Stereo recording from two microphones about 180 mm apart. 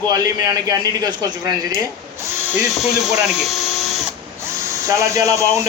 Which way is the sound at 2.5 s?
Centre (ahead or behind).